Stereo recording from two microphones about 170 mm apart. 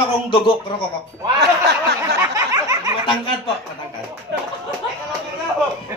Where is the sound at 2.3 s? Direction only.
20° right (ahead or behind).